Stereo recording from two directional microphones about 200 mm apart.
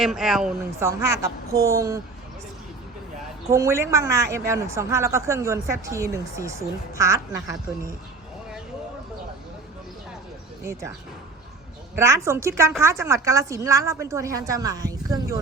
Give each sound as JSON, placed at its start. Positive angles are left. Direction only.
{"t": 0.0, "sound": "speech", "side_deg": 0}
{"t": 0.8, "sound": "a woman's voice", "side_deg": -15}
{"t": 3.4, "sound": "a woman's voice", "side_deg": -15}
{"t": 10.7, "sound": "a woman's voice", "side_deg": -15}
{"t": 11.9, "sound": "a woman's voice", "side_deg": -15}